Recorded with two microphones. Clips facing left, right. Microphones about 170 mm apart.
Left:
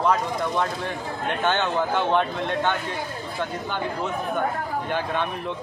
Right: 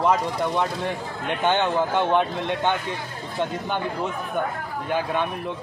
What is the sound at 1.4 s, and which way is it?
Speech, 15° right (ahead or behind).